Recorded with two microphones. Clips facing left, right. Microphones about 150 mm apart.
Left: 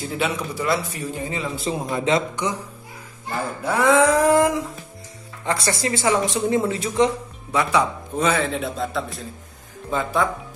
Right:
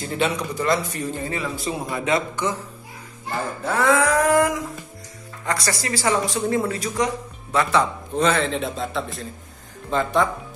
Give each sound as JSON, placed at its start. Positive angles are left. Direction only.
{"t": 0.0, "sound": "a man's voice", "side_deg": 5}
{"t": 3.6, "sound": "a sound", "side_deg": 15}
{"t": 5.4, "sound": "speech", "side_deg": 25}
{"t": 7.5, "sound": "a man's voice", "side_deg": 10}